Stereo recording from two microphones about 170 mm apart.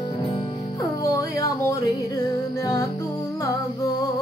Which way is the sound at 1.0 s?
20° left (ahead or behind).